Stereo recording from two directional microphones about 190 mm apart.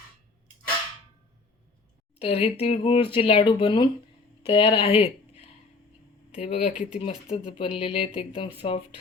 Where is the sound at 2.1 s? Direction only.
30° left (ahead or behind).